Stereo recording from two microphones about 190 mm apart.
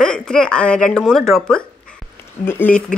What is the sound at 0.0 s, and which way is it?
Speech, 5° left (ahead or behind).